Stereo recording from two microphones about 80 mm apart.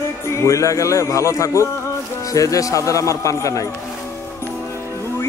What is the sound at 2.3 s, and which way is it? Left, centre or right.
Speech, left.